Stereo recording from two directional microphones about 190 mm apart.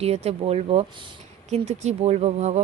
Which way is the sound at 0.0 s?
35° right (ahead or behind).